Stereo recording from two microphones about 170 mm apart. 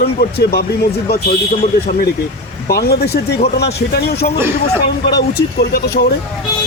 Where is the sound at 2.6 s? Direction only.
65° left (ahead or behind).